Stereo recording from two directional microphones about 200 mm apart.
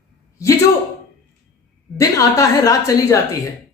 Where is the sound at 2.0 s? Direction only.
15° left (ahead or behind).